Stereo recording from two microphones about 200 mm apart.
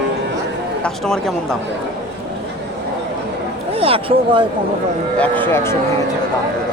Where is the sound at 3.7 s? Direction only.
30° right (ahead or behind).